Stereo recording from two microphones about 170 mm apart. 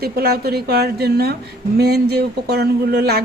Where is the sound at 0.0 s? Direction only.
65° right (ahead or behind).